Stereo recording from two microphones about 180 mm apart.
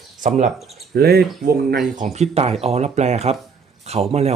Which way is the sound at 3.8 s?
35° right (ahead or behind).